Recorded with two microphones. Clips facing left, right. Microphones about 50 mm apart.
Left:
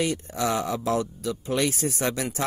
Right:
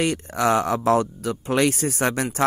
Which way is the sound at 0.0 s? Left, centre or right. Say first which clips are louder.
Right 4 dB; right.